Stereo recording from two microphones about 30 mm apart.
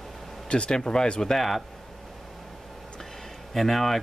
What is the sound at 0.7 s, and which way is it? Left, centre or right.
Speech, left.